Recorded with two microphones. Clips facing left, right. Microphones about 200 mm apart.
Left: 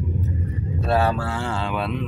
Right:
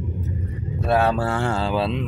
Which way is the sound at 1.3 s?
55° right (ahead or behind).